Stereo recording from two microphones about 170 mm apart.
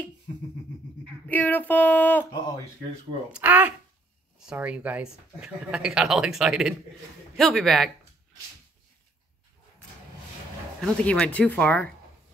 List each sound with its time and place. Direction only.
1.2 s female singing: 10° left (ahead or behind)
3.3 s speech: 10° right (ahead or behind)
10.8 s speech: 5° left (ahead or behind)